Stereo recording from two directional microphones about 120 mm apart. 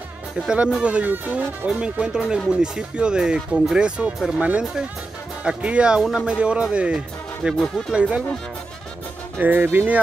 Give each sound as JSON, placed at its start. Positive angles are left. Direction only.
{"t": 0.5, "sound": "speech", "side_deg": -10}
{"t": 9.4, "sound": "speech", "side_deg": -15}